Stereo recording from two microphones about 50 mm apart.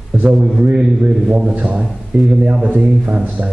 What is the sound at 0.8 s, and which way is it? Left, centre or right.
Speech, centre.